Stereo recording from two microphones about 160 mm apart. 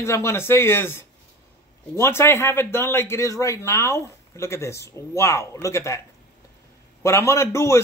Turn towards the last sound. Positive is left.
turn(degrees=20)  # may be behind; listen again after turning